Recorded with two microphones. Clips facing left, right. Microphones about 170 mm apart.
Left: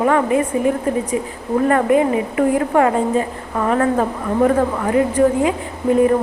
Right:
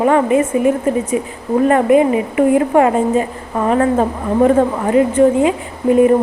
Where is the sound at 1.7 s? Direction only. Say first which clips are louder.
Right 3 dB; 20° right (ahead or behind).